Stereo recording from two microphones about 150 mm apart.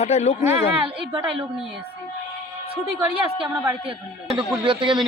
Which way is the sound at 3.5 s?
10° right (ahead or behind).